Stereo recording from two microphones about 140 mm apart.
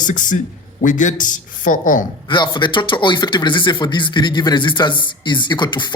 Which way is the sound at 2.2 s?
35° left (ahead or behind).